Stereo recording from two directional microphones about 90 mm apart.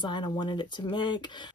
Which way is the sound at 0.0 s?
60° left (ahead or behind).